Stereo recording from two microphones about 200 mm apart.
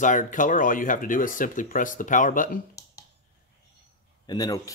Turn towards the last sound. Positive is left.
turn(degrees=20)  # may be behind; listen again after turning